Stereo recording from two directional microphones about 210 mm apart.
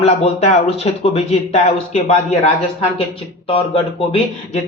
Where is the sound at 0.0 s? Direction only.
30° left (ahead or behind).